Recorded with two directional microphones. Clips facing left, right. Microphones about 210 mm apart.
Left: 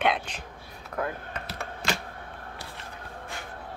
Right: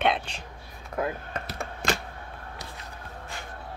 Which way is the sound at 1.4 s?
45° right (ahead or behind).